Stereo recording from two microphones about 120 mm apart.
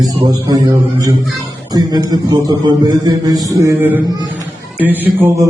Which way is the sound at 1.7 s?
35° right (ahead or behind).